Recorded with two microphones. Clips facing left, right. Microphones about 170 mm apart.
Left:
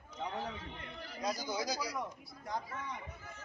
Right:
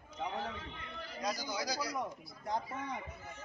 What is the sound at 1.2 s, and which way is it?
Speech, 25° left (ahead or behind).